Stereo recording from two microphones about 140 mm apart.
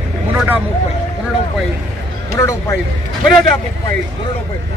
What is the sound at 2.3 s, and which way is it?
Speech, 20° left (ahead or behind).